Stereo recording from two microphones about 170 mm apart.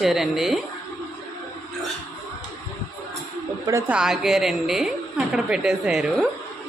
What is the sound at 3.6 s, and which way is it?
Speech, 15° right (ahead or behind).